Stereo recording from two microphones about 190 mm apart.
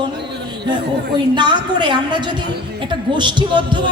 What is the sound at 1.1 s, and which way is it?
Speech, 25° right (ahead or behind).